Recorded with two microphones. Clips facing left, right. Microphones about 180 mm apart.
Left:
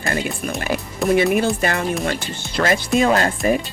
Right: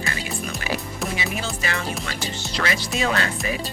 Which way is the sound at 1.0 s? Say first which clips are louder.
Left 16 dB; 60° left (ahead or behind).